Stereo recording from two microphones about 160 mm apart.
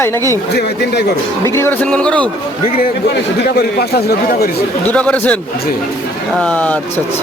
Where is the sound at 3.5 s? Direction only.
80° left.